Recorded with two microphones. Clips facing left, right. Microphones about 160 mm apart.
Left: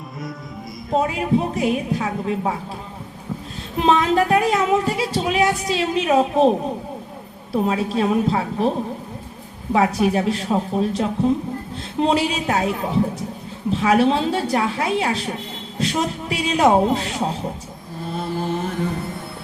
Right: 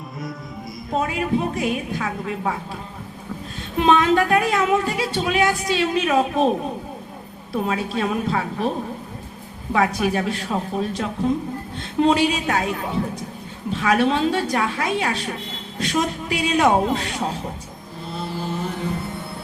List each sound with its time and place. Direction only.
1.0 s speech: 30° left (ahead or behind)
3.8 s speech: 30° left (ahead or behind)
7.5 s speech: 30° left (ahead or behind)
9.7 s a woman's voice: 30° left (ahead or behind)